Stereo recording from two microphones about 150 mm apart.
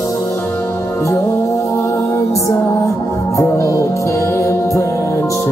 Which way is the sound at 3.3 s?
20° left (ahead or behind).